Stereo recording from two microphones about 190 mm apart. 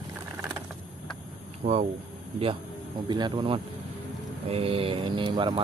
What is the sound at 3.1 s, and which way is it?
Speech, 25° right (ahead or behind).